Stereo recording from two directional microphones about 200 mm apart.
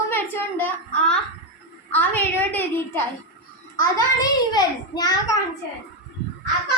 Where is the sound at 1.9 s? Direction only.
10° left (ahead or behind).